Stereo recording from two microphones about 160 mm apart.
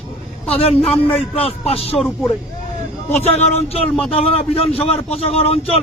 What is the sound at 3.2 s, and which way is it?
A man's voice, 40° left (ahead or behind).